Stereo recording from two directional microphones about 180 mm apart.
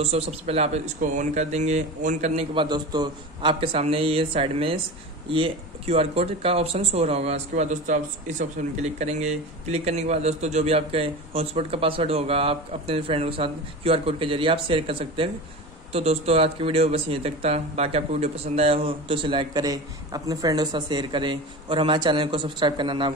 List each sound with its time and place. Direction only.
0.0 s speech: 35° right (ahead or behind)